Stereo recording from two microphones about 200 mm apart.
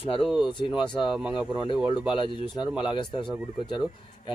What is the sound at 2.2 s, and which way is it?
A man's voice, 20° left (ahead or behind).